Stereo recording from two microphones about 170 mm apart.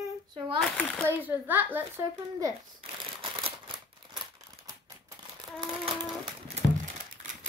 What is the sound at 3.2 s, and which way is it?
Typewriter, 30° right (ahead or behind).